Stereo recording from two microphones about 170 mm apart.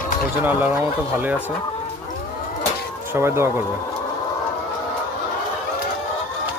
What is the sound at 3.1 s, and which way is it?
Speech, 15° right (ahead or behind).